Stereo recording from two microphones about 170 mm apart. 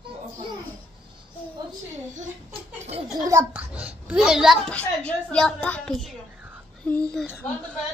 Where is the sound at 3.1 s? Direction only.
25° right (ahead or behind).